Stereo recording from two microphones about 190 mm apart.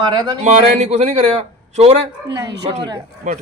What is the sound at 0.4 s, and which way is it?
Speech, 35° right (ahead or behind).